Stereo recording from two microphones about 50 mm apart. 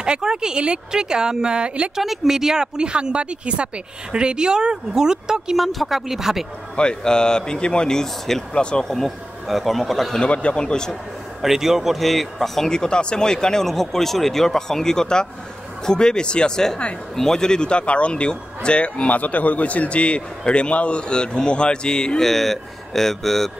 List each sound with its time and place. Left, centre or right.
0.0 s speech: centre
2.0 s speech: centre
5.6 s speech: centre
6.8 s speech: centre
10.2 s speech: left
11.4 s speech: centre
22.3 s speech: centre